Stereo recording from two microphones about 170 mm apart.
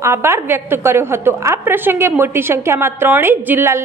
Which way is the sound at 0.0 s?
15° right (ahead or behind).